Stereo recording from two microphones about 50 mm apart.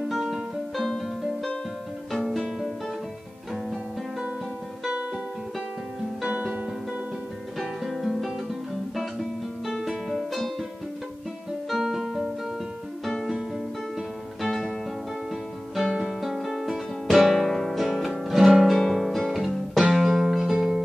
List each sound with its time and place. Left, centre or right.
0.1 s music: centre
6.3 s music: right
7.5 s music: centre
11.7 s music: centre
14.4 s music: centre
15.7 s music: centre